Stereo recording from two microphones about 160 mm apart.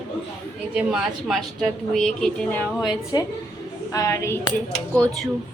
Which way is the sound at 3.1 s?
25° left (ahead or behind).